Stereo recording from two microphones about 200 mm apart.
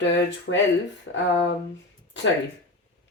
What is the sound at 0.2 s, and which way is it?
Speech, 65° left (ahead or behind).